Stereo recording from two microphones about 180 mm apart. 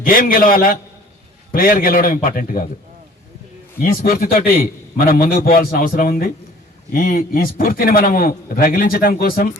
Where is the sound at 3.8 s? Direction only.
55° left (ahead or behind).